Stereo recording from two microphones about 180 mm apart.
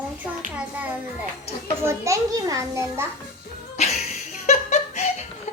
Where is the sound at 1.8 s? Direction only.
15° right (ahead or behind).